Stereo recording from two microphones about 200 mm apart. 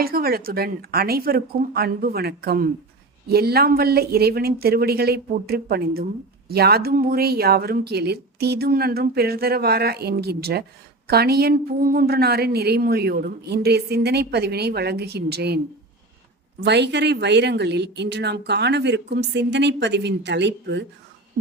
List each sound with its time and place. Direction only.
0.0 s a woman's voice: 50° right (ahead or behind)
16.6 s speech: 60° right (ahead or behind)